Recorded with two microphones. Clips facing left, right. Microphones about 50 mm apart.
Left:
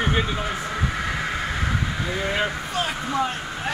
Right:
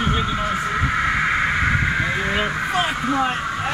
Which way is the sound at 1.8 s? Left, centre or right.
Right.